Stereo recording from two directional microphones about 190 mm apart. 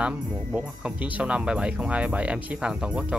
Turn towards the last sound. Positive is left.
turn(degrees=-5)  # may be behind; listen again after turning